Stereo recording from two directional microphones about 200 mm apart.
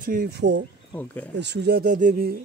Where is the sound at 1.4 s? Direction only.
55° right (ahead or behind).